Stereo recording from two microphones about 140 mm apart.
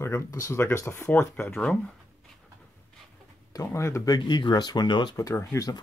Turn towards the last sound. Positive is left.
turn(degrees=25)  # may be behind; listen again after turning